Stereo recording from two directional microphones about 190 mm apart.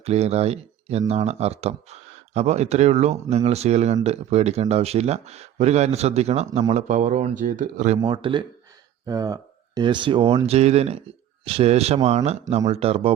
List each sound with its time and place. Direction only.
0.0 s speech: 35° right (ahead or behind)
8.0 s speech: 25° right (ahead or behind)